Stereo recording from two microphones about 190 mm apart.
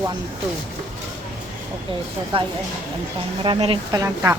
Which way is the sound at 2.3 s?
30° right (ahead or behind).